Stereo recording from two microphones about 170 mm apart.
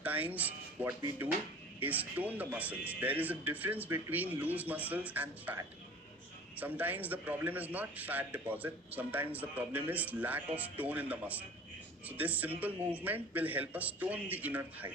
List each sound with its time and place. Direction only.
0.0 s a man's voice: 10° right (ahead or behind)